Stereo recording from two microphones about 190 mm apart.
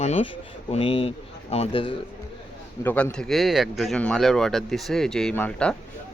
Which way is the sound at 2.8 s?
5° left (ahead or behind).